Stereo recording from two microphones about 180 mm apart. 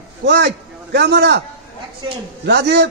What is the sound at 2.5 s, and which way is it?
Speech, 70° right (ahead or behind).